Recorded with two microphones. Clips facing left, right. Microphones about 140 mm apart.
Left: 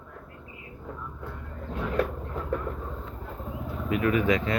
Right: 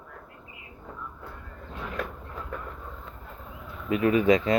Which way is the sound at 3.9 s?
25° right (ahead or behind).